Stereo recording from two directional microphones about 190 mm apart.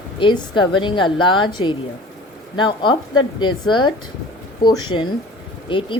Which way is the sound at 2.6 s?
25° left (ahead or behind).